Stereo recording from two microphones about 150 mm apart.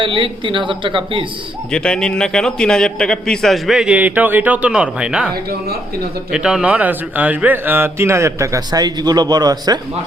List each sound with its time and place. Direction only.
0.0 s a woman's voice: 35° right (ahead or behind)
1.7 s a man's voice: 5° left (ahead or behind)
6.3 s speech: 5° right (ahead or behind); by 9.7 s 25° right (ahead or behind)